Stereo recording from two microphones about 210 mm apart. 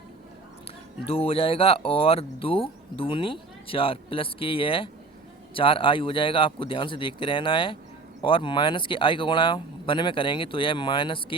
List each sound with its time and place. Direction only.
1.0 s speech: 25° left (ahead or behind)